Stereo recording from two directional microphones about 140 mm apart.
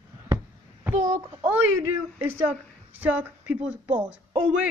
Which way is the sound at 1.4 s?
15° right (ahead or behind).